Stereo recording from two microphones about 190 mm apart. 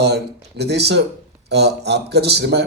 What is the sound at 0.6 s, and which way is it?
Speech, 60° right (ahead or behind).